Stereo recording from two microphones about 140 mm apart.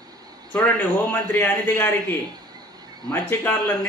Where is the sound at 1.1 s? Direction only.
15° left (ahead or behind).